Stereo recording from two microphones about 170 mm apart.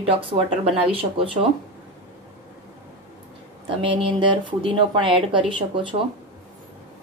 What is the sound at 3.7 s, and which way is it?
Speech, 30° right (ahead or behind).